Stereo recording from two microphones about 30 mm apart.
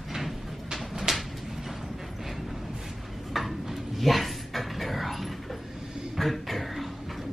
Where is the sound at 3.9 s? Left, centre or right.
Centre.